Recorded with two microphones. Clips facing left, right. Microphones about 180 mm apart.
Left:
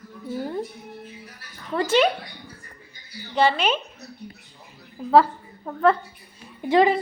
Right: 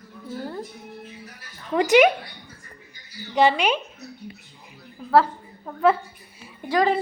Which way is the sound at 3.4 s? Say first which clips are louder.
Right 1 dB; 15° right (ahead or behind).